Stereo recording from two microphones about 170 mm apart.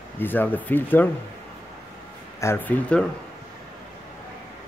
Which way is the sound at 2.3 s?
15° left (ahead or behind).